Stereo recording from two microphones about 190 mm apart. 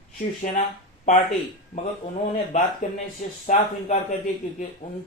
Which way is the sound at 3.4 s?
40° left (ahead or behind).